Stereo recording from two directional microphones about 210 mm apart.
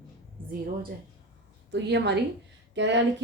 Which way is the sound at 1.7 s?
55° right (ahead or behind).